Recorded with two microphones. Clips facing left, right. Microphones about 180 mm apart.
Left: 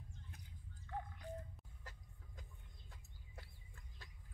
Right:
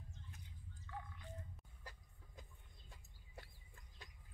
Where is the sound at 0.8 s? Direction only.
45° left (ahead or behind).